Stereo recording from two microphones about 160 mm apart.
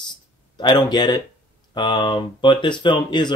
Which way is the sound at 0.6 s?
30° left (ahead or behind).